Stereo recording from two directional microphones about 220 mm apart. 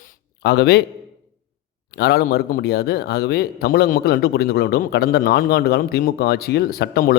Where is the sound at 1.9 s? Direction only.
45° left (ahead or behind).